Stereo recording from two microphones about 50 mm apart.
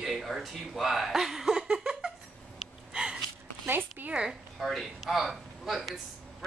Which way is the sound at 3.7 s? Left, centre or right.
Right.